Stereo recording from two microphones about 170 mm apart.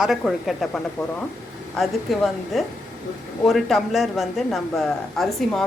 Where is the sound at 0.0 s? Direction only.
Centre (ahead or behind).